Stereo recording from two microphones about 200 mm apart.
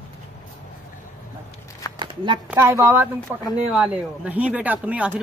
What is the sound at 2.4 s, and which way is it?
A man's voice, 15° right (ahead or behind).